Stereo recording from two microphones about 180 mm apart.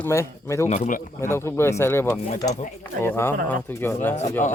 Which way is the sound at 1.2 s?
15° left (ahead or behind).